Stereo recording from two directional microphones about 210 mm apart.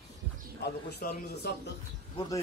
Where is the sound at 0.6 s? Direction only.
45° left (ahead or behind).